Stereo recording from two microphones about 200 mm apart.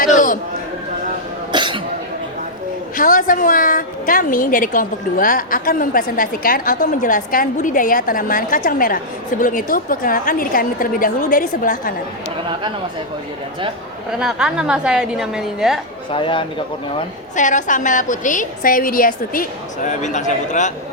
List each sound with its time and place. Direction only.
0.0 s a woman's voice: 40° left (ahead or behind)
1.5 s cough: 25° right (ahead or behind)
2.9 s a woman's voice: 40° left (ahead or behind)
14.2 s a woman's voice: 5° right (ahead or behind)
16.1 s speech: 25° left (ahead or behind)
17.3 s a woman's voice: 40° left (ahead or behind)